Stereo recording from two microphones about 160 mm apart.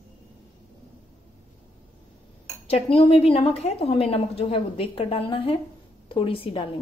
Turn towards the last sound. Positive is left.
turn(degrees=35)  # may be behind; listen again after turning